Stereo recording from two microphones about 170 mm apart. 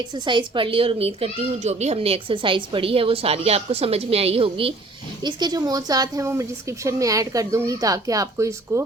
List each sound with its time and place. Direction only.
0.1 s a child's voice: 30° right (ahead or behind)